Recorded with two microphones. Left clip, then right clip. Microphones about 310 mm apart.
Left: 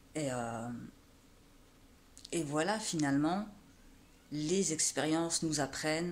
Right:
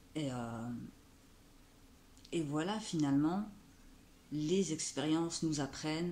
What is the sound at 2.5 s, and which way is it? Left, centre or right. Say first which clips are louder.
Speech: left 8 dB; centre.